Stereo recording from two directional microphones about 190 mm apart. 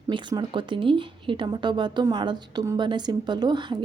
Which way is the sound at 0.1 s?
25° right (ahead or behind).